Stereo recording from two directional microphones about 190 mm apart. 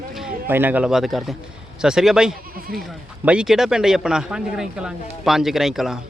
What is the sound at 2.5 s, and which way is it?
Speech, 50° right (ahead or behind).